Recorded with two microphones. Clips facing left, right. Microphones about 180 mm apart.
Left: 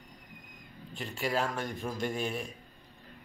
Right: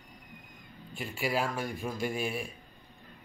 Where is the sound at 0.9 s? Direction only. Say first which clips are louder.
Even; 10° right (ahead or behind).